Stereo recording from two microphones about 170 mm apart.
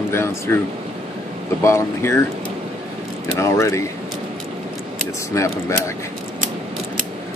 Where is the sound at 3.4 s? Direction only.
15° left (ahead or behind).